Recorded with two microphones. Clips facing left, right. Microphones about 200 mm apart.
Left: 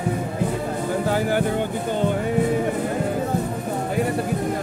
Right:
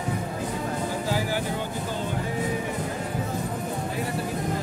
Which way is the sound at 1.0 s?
55° left (ahead or behind).